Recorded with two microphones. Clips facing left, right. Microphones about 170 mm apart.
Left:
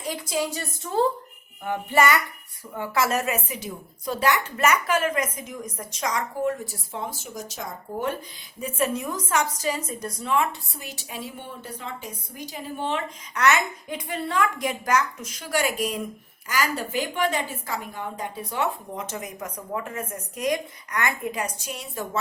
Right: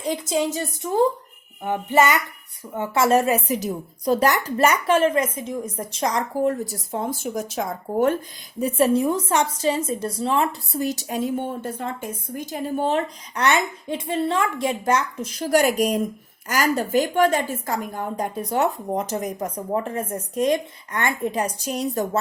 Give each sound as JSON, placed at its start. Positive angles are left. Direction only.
{"t": 0.0, "sound": "a woman's voice", "side_deg": -25}
{"t": 8.6, "sound": "a woman's voice", "side_deg": -30}